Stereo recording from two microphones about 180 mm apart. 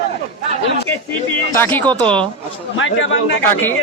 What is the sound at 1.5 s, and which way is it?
Speech, 10° left (ahead or behind).